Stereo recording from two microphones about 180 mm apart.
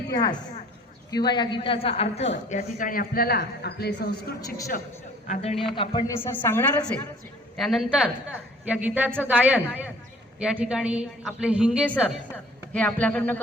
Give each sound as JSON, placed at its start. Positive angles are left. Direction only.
{"t": 0.1, "sound": "a woman's voice", "side_deg": 20}
{"t": 5.3, "sound": "a man's voice", "side_deg": 35}
{"t": 6.1, "sound": "a woman's voice", "side_deg": 15}
{"t": 12.3, "sound": "a woman's voice", "side_deg": 5}